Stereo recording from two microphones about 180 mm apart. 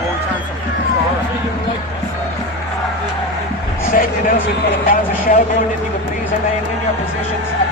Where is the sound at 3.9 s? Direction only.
50° left (ahead or behind).